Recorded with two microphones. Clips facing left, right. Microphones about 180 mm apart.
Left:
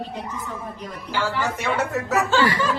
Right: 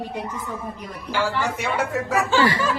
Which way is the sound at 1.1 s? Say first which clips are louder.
Right 1 dB; 10° right (ahead or behind).